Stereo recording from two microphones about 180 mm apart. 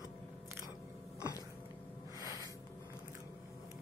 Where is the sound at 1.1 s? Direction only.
15° left (ahead or behind).